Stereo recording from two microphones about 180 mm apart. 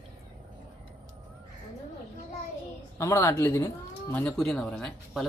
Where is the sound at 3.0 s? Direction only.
15° left (ahead or behind).